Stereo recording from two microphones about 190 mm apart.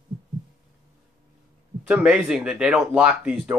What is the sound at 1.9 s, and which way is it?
Speech, 5° right (ahead or behind).